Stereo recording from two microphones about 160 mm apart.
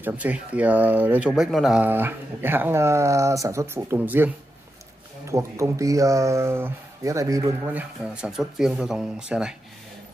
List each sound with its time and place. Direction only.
0.0 s speech: 10° right (ahead or behind)
5.3 s speech: 20° right (ahead or behind)